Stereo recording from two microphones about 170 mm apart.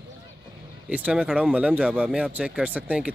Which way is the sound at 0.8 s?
10° right (ahead or behind).